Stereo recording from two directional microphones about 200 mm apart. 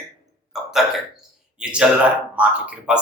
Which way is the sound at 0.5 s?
Centre (ahead or behind).